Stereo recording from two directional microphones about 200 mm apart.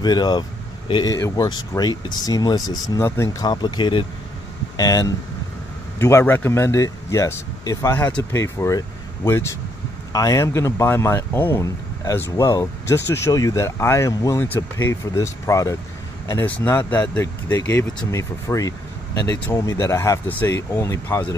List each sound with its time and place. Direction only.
0.0 s speech: 20° left (ahead or behind)